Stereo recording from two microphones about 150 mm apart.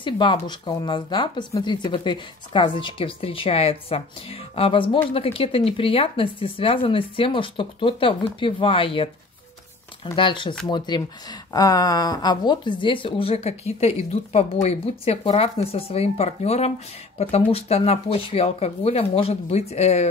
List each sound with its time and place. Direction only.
0.0 s speech: 35° left (ahead or behind)
10.1 s speech: 35° left (ahead or behind)